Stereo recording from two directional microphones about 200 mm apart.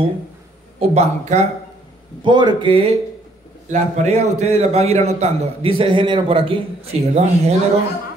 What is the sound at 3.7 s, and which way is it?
A man's voice, 35° right (ahead or behind).